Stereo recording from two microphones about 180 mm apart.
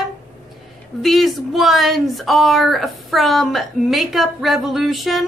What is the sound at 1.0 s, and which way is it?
A woman's voice, centre (ahead or behind).